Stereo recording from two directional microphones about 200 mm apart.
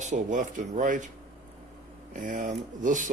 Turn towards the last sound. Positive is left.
turn(degrees=-40)  # may be behind; listen again after turning